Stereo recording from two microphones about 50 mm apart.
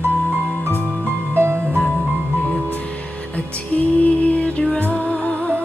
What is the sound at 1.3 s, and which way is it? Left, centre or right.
Music, right.